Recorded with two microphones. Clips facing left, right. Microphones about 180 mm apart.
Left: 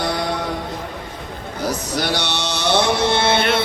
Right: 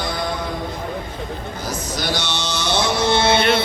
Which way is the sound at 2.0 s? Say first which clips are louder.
Left 1 dB; 65° left (ahead or behind).